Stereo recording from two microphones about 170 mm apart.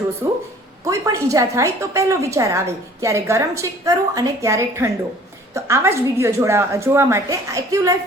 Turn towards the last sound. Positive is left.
turn(degrees=-20)  # may be behind; listen again after turning